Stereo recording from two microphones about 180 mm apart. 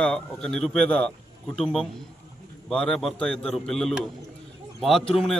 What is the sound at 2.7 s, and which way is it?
A man's voice, 5° left (ahead or behind).